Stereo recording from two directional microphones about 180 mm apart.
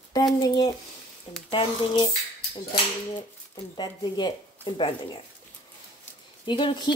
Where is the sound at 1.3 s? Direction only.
35° left (ahead or behind).